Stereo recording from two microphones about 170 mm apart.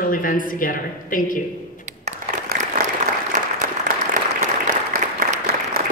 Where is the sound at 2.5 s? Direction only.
60° right (ahead or behind).